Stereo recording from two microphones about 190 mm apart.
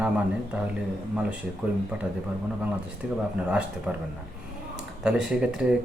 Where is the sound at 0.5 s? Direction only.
5° right (ahead or behind).